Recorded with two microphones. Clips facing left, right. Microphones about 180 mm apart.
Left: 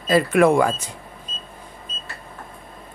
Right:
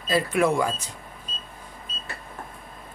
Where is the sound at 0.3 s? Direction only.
55° left (ahead or behind).